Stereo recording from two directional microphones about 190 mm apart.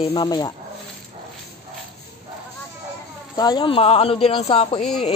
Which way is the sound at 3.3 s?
20° left (ahead or behind).